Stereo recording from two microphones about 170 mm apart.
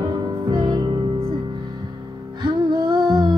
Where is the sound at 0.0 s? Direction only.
25° right (ahead or behind).